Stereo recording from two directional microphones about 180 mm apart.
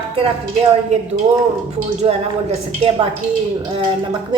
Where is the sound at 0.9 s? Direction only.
40° right (ahead or behind).